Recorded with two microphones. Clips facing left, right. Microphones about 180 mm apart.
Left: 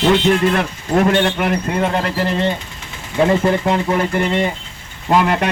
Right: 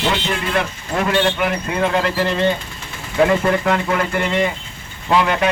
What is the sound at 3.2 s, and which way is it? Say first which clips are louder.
Speech: left 2 dB; 25° left (ahead or behind).